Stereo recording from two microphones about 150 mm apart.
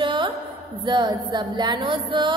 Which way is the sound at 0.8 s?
30° right (ahead or behind).